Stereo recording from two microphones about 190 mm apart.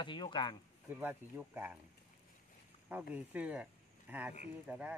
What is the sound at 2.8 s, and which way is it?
Speech, 10° right (ahead or behind).